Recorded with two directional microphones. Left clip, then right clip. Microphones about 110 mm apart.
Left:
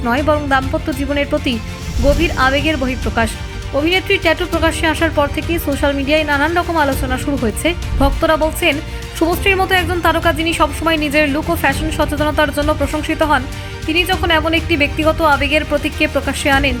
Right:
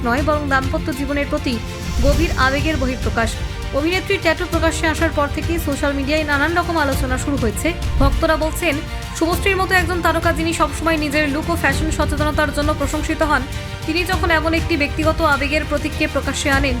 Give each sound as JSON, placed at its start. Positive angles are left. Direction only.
{"t": 0.0, "sound": "speech", "side_deg": 25}